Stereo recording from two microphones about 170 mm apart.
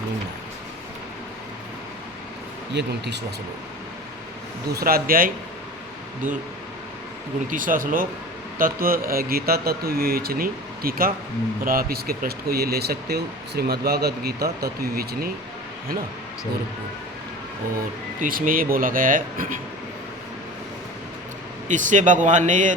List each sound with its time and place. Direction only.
2.7 s speech: 85° right
4.7 s speech: 60° right (ahead or behind)
7.5 s speech: 55° right (ahead or behind)
18.2 s speech: 55° right (ahead or behind)
21.7 s speech: 45° right (ahead or behind)